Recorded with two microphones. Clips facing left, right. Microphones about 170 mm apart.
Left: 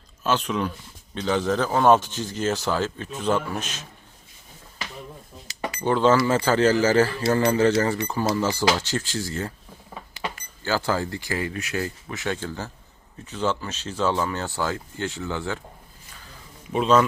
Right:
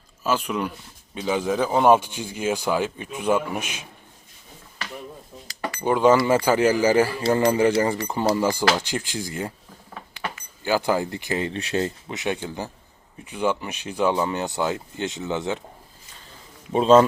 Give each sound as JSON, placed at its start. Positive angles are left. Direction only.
{"t": 0.2, "sound": "speech", "side_deg": -10}
{"t": 5.8, "sound": "speech", "side_deg": -10}
{"t": 10.6, "sound": "speech", "side_deg": -15}
{"t": 16.7, "sound": "speech", "side_deg": -30}